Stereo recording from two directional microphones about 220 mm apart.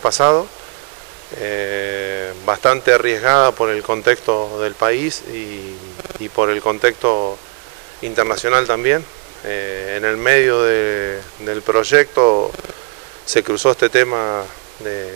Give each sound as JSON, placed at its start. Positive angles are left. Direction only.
{"t": 0.0, "sound": "speech", "side_deg": -25}
{"t": 6.3, "sound": "speech", "side_deg": -25}
{"t": 8.2, "sound": "speech", "side_deg": -20}